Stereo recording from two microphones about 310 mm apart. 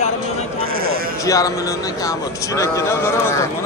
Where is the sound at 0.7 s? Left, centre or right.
Right.